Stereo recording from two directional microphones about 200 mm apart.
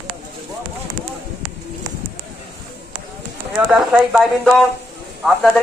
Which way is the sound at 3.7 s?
5° right (ahead or behind).